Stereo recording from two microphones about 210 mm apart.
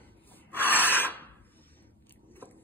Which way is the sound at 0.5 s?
10° left (ahead or behind).